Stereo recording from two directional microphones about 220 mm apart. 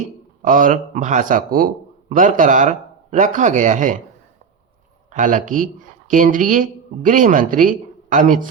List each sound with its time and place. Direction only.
0.4 s a man's voice: 35° right (ahead or behind)
5.1 s a man's voice: 35° right (ahead or behind)